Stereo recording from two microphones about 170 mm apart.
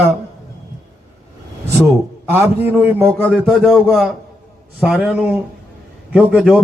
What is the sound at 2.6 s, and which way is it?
A man's voice, 10° right (ahead or behind).